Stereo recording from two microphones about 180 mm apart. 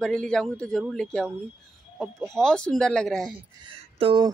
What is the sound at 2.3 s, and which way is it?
Speech, 5° left (ahead or behind).